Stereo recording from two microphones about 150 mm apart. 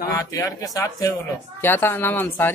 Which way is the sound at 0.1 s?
20° left (ahead or behind).